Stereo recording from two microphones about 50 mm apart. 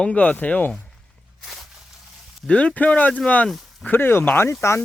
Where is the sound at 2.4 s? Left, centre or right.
Left.